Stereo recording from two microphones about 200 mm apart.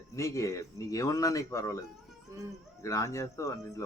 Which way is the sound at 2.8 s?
15° left (ahead or behind).